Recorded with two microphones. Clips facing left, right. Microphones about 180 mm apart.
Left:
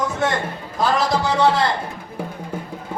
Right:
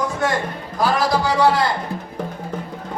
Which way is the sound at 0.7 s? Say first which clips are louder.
Right 1 dB; 25° left (ahead or behind).